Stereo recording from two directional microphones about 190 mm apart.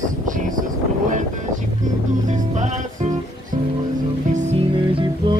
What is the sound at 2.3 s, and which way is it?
Music, 40° right (ahead or behind).